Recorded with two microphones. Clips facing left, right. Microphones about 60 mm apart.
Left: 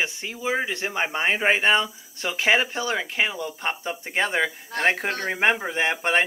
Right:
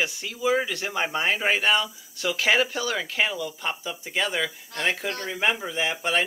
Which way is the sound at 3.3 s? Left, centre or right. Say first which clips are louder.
Left 2 dB; left.